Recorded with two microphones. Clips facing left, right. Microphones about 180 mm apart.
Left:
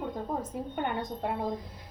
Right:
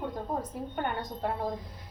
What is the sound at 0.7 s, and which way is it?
Speech, 15° left (ahead or behind).